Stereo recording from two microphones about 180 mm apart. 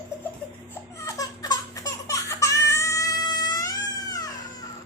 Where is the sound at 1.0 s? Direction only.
20° left (ahead or behind).